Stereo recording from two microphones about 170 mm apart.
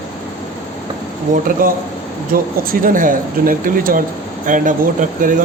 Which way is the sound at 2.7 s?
55° right (ahead or behind).